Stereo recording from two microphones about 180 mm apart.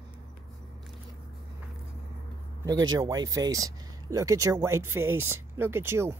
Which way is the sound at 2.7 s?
90° right.